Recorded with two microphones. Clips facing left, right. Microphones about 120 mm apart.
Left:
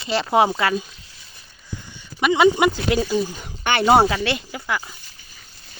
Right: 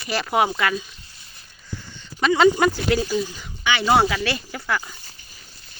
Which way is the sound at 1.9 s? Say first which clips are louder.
Left 1 dB; 10° left (ahead or behind).